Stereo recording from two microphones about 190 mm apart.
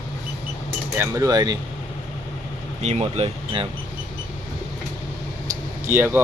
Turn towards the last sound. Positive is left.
turn(degrees=-10)  # may be behind; listen again after turning